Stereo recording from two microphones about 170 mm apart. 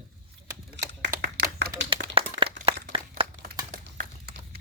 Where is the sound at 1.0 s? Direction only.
80° right.